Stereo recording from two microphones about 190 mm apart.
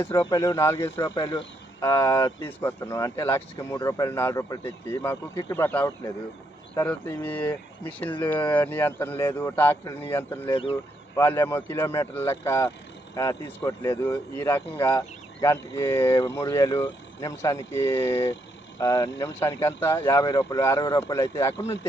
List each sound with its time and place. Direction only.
0.2 s speech: 20° left (ahead or behind)
10.5 s speech: 30° left (ahead or behind)
11.2 s speech: 10° left (ahead or behind)
16.0 s speech: 25° left (ahead or behind)